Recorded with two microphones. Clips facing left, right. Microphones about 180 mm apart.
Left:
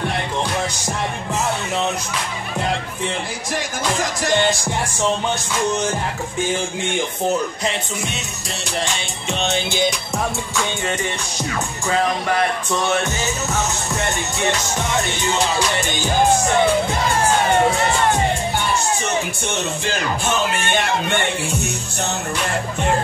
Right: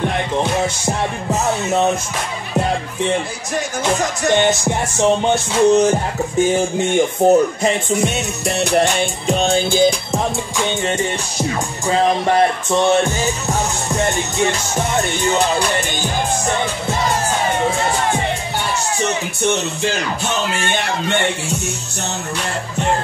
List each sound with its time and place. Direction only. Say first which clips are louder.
4.5 s music: right 4 dB; 25° right (ahead or behind)
7.2 s speech: right 11 dB; 50° right (ahead or behind)
8.5 s music: right 10 dB; 60° right (ahead or behind)
9.3 s music: right 5 dB; 35° right (ahead or behind)
11.9 s music: right 5 dB; 25° right (ahead or behind)